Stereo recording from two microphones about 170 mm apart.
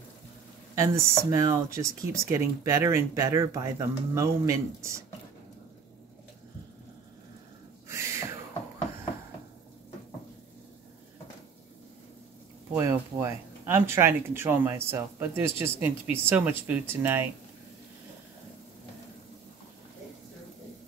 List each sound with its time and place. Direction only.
0.7 s speech: 20° right (ahead or behind)
7.9 s a sound: 15° right (ahead or behind)
12.7 s speech: 15° right (ahead or behind)